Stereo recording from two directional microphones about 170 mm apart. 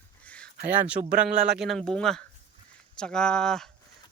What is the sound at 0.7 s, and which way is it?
Speech, 10° right (ahead or behind).